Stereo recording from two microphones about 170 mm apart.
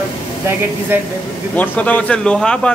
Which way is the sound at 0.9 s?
10° right (ahead or behind).